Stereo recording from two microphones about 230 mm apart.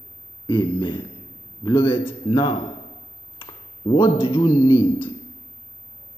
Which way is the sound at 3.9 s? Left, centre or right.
Centre.